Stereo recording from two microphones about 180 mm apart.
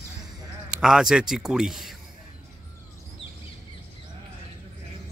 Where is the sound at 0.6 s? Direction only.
5° right (ahead or behind).